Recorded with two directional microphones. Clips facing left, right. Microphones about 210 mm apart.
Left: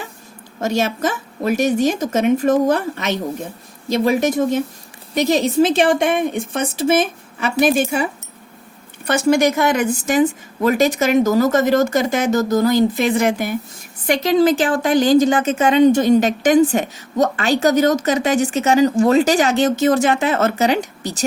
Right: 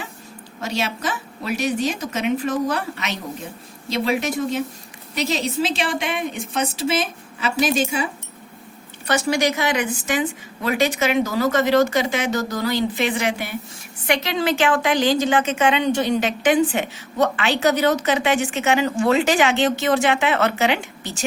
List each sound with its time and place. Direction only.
0.6 s a woman's voice: 50° left (ahead or behind)
9.0 s a woman's voice: 50° left (ahead or behind)